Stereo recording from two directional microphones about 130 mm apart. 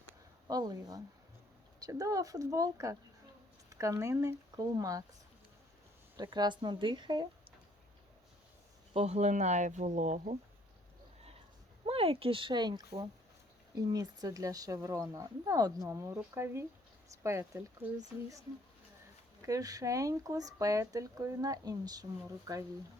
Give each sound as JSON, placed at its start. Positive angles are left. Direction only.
{"t": 0.4, "sound": "speech", "side_deg": -30}
{"t": 6.1, "sound": "speech", "side_deg": -35}
{"t": 8.9, "sound": "speech", "side_deg": -55}
{"t": 11.9, "sound": "speech", "side_deg": -50}
{"t": 19.5, "sound": "speech", "side_deg": -25}